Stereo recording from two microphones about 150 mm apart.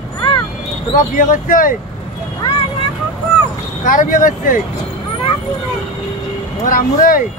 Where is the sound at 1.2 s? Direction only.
60° left (ahead or behind).